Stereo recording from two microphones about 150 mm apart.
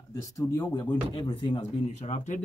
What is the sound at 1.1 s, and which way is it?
Speech, 35° left (ahead or behind).